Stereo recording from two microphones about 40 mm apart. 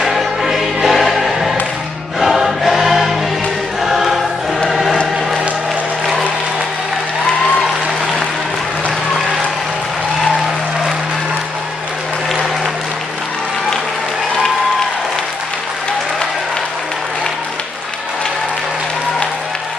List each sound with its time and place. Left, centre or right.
0.8 s choir: centre